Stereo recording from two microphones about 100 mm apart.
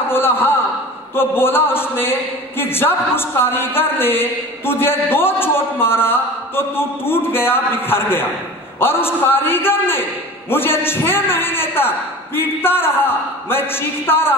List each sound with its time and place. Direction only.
0.1 s a man's voice: 20° left (ahead or behind)